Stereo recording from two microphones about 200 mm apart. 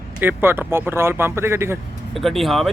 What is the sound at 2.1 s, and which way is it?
Speech, centre (ahead or behind).